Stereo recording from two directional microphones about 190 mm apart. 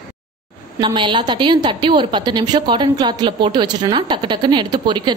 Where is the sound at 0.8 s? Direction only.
25° right (ahead or behind).